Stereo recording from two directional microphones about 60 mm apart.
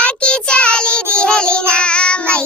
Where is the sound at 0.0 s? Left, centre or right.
Centre.